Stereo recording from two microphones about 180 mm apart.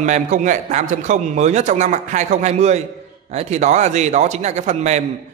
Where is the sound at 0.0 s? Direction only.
40° right (ahead or behind).